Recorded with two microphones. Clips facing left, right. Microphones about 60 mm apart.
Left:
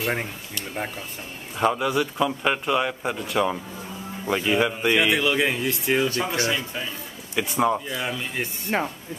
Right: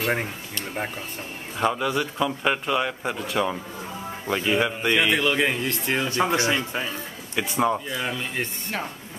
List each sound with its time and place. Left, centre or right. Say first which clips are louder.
0.0 s speech: right 1 dB; centre
1.6 s speech: left 2 dB; centre
6.0 s speech: right 2 dB; right
7.3 s speech: left 1 dB; centre